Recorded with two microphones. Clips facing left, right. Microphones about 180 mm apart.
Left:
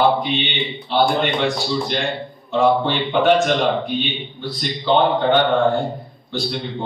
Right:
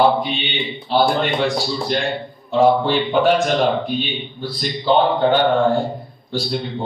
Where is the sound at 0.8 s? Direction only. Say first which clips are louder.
Right 1 dB; 35° right (ahead or behind).